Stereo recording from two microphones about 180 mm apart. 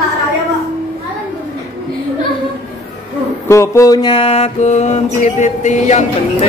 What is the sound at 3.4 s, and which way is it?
Mantra, 15° left (ahead or behind).